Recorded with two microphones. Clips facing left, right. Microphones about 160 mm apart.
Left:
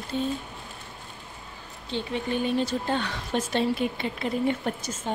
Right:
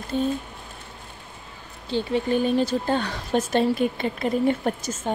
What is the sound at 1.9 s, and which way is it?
Speech, 35° right (ahead or behind).